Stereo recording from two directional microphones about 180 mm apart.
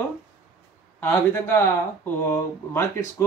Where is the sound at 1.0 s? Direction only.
10° left (ahead or behind).